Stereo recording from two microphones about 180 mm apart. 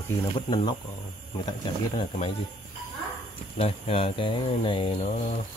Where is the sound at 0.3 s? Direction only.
25° left (ahead or behind).